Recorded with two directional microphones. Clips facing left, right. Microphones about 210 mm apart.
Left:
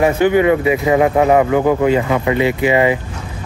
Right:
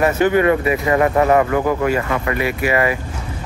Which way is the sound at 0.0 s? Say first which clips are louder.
Left 2 dB; 15° left (ahead or behind).